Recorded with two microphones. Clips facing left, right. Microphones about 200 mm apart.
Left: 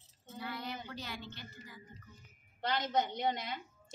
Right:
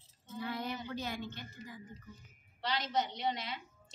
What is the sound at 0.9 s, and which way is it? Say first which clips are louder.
Speech: right 5 dB; 50° right (ahead or behind).